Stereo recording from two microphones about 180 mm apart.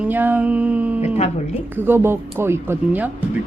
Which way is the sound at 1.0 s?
35° left (ahead or behind).